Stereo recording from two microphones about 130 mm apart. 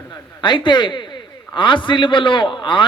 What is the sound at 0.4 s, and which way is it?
A man's voice, 35° left (ahead or behind).